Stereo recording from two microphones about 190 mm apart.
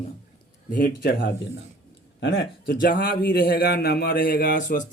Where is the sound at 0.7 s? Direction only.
45° left (ahead or behind).